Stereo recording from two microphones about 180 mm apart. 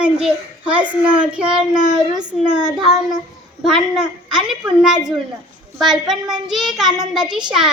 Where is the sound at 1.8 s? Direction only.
25° right (ahead or behind).